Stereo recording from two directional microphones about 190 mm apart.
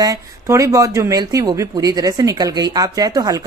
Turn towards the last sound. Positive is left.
turn(degrees=-20)  # may be behind; listen again after turning